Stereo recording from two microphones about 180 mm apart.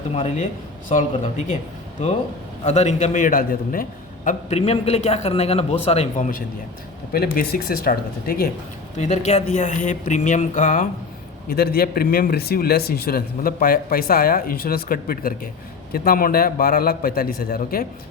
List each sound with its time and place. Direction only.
0.1 s a man's voice: 35° left (ahead or behind)
2.6 s a man's voice: 40° left (ahead or behind)
7.1 s a man's voice: 55° left (ahead or behind)
9.0 s a man's voice: 40° left (ahead or behind)
11.4 s a man's voice: 60° left (ahead or behind)